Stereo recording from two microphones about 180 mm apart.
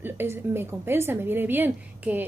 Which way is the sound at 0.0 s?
15° right (ahead or behind).